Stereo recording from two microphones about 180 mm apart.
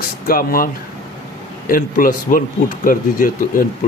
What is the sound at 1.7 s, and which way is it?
Speech, 50° left (ahead or behind).